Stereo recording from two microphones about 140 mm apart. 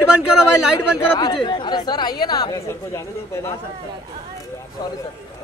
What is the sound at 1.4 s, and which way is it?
Speech, 35° left (ahead or behind).